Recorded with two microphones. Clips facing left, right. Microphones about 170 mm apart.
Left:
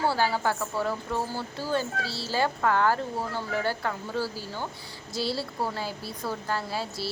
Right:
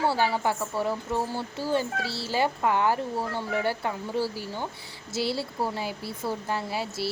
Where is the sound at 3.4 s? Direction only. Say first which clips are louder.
Right 1 dB; 25° right (ahead or behind).